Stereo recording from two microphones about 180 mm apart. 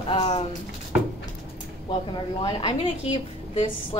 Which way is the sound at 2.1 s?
30° left (ahead or behind).